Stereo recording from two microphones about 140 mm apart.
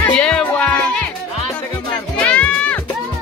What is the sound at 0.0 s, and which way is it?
Music, 5° left (ahead or behind).